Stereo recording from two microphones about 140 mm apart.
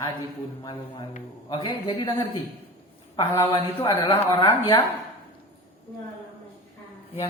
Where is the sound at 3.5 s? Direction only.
35° left (ahead or behind).